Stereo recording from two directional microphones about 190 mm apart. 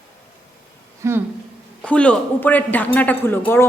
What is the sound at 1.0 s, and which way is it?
Speech, 15° right (ahead or behind).